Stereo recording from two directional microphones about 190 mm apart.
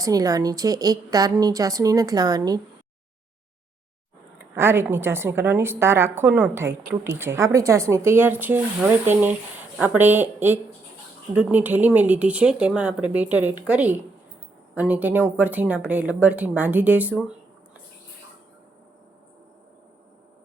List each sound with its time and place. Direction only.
0.0 s a woman's voice: 20° right (ahead or behind)
4.5 s speech: 10° right (ahead or behind)